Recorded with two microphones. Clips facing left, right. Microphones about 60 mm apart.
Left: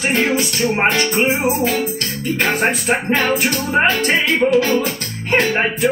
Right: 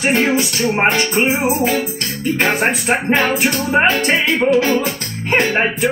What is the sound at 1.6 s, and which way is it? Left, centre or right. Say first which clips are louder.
Music: right 1 dB; right.